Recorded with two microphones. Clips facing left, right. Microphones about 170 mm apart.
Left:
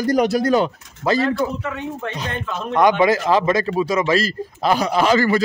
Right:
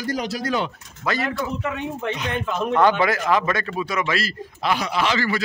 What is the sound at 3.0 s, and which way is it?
A man's voice, 25° left (ahead or behind).